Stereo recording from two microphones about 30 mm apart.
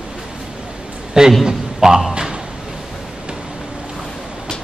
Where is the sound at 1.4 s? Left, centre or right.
Centre.